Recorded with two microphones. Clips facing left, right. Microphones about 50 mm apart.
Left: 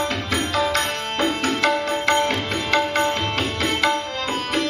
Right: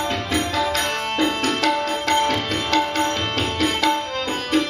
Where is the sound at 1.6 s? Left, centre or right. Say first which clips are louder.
Even; left.